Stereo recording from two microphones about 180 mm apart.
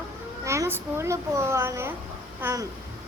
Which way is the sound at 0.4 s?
15° right (ahead or behind).